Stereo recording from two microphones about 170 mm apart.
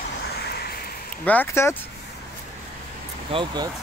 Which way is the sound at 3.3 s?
25° right (ahead or behind).